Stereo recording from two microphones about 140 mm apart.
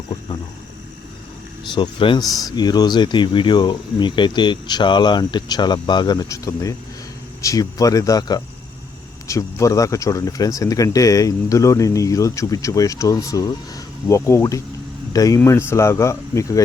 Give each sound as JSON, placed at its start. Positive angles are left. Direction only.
{"t": 1.7, "sound": "speech", "side_deg": 35}